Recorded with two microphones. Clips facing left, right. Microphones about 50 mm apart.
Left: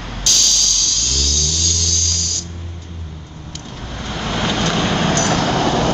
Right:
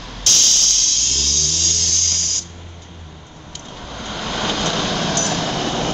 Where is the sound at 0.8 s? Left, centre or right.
Right.